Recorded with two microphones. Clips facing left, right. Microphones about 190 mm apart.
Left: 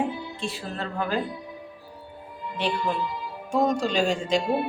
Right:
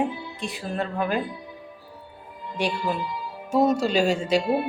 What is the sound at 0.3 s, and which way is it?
Speech, 15° right (ahead or behind).